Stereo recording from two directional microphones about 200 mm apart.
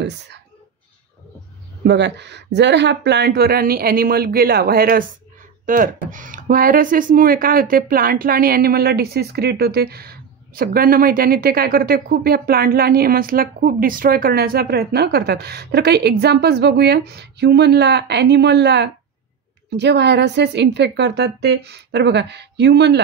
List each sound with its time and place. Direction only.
1.9 s a woman's voice: 60° right (ahead or behind)